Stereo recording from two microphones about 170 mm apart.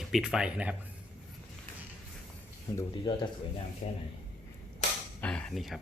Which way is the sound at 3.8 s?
40° left (ahead or behind).